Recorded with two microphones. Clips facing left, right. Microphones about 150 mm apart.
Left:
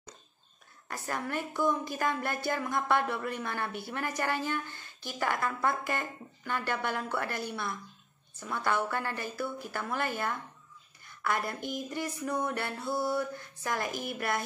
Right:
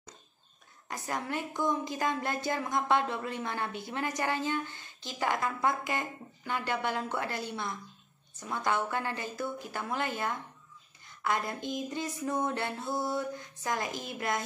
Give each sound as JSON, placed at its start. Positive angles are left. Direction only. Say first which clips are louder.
{"t": 0.8, "sound": "a woman's voice", "louder": "even", "side_deg": -20}